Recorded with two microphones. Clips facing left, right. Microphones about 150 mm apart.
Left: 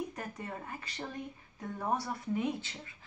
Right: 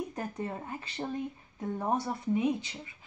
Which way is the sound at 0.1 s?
30° right (ahead or behind).